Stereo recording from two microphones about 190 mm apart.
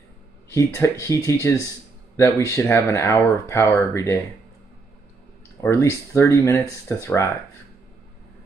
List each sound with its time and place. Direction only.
0.5 s speech: 15° left (ahead or behind)
5.6 s speech: 15° left (ahead or behind)